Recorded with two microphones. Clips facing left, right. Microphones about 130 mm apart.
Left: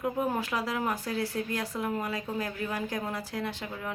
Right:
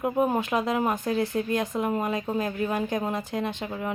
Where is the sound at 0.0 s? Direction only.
20° right (ahead or behind).